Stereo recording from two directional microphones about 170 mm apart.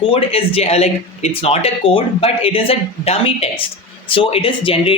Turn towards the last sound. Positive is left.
turn(degrees=35)  # may be behind; listen again after turning